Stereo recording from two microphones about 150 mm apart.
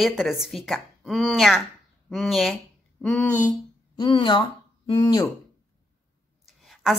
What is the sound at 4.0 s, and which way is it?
Speech, 35° left (ahead or behind).